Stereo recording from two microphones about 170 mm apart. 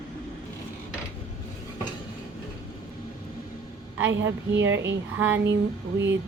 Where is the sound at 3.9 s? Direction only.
90° right.